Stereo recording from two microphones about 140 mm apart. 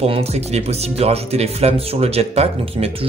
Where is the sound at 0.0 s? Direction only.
45° right (ahead or behind).